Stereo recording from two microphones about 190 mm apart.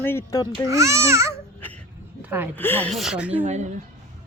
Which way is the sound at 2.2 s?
10° right (ahead or behind).